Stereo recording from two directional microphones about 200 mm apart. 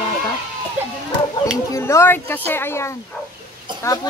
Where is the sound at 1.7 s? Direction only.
15° left (ahead or behind).